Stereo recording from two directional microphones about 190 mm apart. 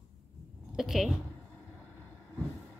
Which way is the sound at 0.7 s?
Centre (ahead or behind).